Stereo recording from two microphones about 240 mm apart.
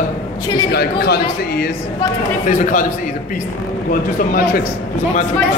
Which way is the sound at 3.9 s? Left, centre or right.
Left.